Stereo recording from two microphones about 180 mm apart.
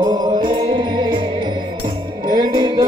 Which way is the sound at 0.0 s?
25° right (ahead or behind).